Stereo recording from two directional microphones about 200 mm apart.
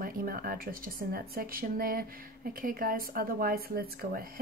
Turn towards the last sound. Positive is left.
turn(degrees=-45)  # may be behind; listen again after turning